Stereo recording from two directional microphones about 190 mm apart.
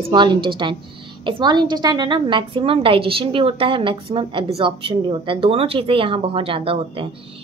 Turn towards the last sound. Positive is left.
turn(degrees=-30)  # may be behind; listen again after turning